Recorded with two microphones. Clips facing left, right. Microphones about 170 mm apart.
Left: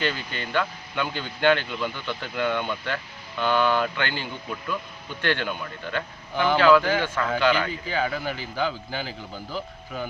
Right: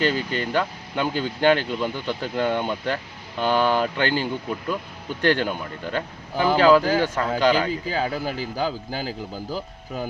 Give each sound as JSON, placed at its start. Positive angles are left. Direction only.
{"t": 0.0, "sound": "speech", "side_deg": -40}